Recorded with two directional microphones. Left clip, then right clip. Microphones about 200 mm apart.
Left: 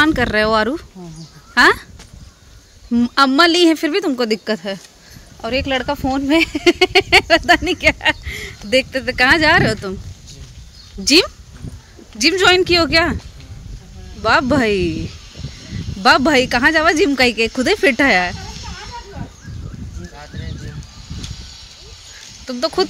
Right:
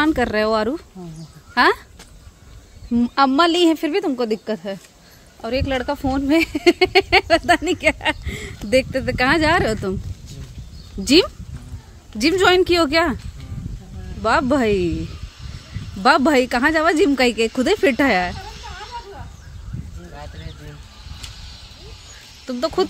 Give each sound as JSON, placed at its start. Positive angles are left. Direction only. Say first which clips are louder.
{"t": 0.0, "sound": "speech", "louder": "left 4 dB", "side_deg": -5}
{"t": 2.9, "sound": "speech", "louder": "left 3 dB", "side_deg": 0}
{"t": 11.1, "sound": "speech", "louder": "left 2 dB", "side_deg": -10}
{"t": 14.2, "sound": "speech", "louder": "left 3 dB", "side_deg": -5}
{"t": 16.0, "sound": "speech", "louder": "left 3 dB", "side_deg": -5}
{"t": 22.5, "sound": "speech", "louder": "left 2 dB", "side_deg": -5}